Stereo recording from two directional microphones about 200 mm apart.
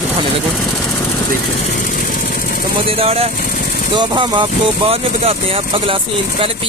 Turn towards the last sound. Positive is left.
turn(degrees=-30)  # may be behind; listen again after turning